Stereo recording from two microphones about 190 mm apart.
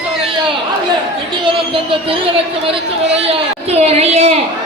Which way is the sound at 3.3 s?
35° right (ahead or behind).